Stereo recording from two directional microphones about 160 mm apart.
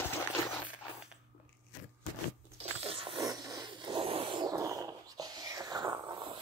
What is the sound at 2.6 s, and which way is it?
Zipper, 35° right (ahead or behind).